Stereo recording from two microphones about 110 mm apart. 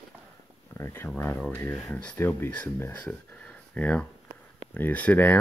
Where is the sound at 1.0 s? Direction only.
20° left (ahead or behind).